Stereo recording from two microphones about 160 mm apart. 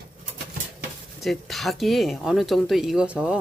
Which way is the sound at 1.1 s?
Centre (ahead or behind).